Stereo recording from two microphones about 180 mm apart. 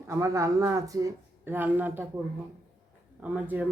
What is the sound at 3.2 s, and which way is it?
Speech, 10° right (ahead or behind).